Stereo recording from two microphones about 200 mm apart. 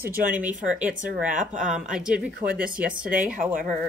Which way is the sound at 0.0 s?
45° right (ahead or behind).